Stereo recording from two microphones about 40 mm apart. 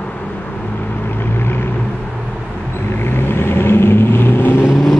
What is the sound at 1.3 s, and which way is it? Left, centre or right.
Vehicle, left.